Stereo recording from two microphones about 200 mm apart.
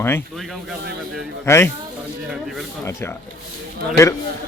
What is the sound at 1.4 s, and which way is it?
Speech, 10° left (ahead or behind).